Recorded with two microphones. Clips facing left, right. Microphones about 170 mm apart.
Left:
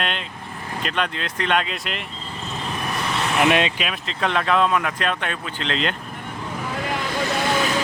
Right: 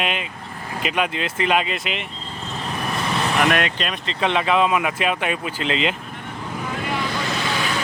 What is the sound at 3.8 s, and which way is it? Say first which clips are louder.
Speech: right 2 dB; centre (ahead or behind).